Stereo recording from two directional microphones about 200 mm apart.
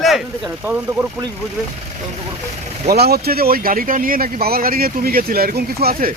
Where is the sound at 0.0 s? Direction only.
5° right (ahead or behind).